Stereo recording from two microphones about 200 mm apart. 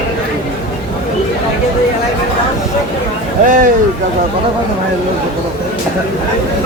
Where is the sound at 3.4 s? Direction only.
40° right (ahead or behind).